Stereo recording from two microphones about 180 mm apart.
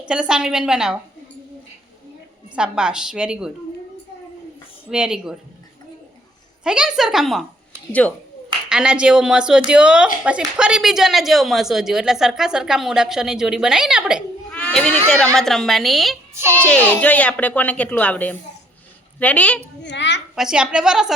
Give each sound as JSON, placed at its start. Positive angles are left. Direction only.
{"t": 0.1, "sound": "speech", "side_deg": -5}
{"t": 2.6, "sound": "speech", "side_deg": -5}
{"t": 4.9, "sound": "speech", "side_deg": -5}
{"t": 6.7, "sound": "speech", "side_deg": -5}
{"t": 8.7, "sound": "speech", "side_deg": -5}
{"t": 16.3, "sound": "a child's voice", "side_deg": -15}
{"t": 16.6, "sound": "speech", "side_deg": 10}
{"t": 19.8, "sound": "a woman's voice", "side_deg": 80}
{"t": 20.3, "sound": "speech", "side_deg": -5}